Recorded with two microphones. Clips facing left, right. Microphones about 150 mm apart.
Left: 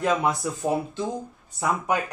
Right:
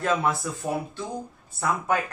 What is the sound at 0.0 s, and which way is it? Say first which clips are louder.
Speech: left 1 dB; 15° left (ahead or behind).